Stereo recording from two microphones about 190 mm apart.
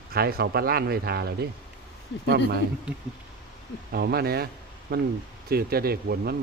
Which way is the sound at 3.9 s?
55° right (ahead or behind).